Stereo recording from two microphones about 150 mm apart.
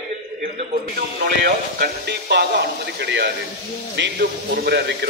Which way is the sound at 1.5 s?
90° right.